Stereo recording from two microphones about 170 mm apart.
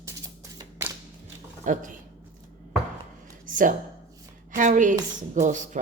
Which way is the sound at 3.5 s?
50° right (ahead or behind).